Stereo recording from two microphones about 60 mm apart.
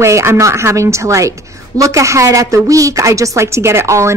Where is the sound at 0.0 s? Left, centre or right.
Right.